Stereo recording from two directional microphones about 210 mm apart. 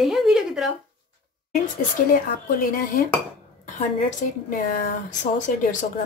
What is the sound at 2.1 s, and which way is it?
A woman's voice, 45° left (ahead or behind).